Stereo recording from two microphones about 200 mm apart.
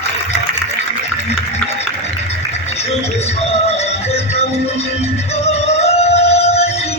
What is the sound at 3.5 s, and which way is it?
Music, 30° left (ahead or behind).